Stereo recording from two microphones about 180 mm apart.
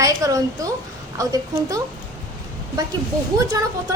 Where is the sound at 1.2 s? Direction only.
20° right (ahead or behind).